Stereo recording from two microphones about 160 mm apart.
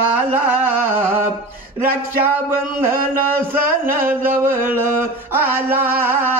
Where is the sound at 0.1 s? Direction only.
10° right (ahead or behind).